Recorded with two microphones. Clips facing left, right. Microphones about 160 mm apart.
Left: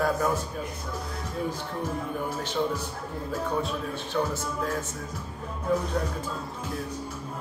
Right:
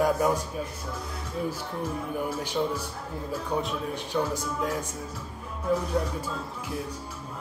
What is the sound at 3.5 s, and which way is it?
A man's voice, 15° right (ahead or behind).